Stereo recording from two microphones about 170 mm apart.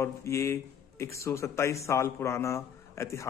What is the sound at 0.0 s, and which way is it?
A man's voice, 15° left (ahead or behind).